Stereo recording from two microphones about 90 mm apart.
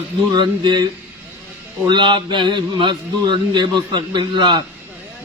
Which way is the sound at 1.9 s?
60° right (ahead or behind).